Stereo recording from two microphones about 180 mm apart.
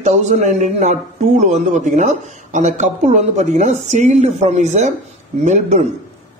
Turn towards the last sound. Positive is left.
turn(degrees=-40)  # may be behind; listen again after turning